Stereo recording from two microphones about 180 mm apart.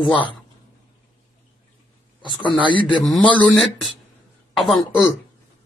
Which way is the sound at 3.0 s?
Centre (ahead or behind).